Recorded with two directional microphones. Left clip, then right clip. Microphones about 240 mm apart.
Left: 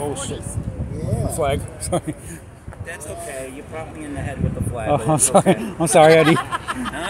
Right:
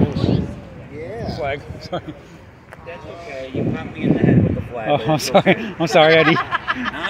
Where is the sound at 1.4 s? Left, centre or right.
Left.